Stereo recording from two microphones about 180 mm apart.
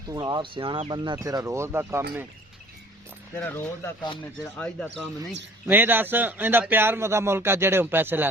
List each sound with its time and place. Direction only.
0.1 s speech: 25° right (ahead or behind)
3.3 s speech: 15° left (ahead or behind)
5.6 s a man's voice: 10° right (ahead or behind)